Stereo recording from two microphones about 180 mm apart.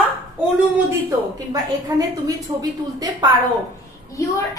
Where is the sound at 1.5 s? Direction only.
20° right (ahead or behind).